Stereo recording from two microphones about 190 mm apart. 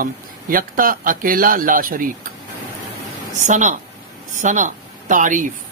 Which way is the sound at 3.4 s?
40° right (ahead or behind).